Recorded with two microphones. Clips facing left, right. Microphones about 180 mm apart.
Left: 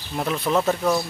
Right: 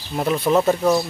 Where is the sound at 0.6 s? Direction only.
15° right (ahead or behind).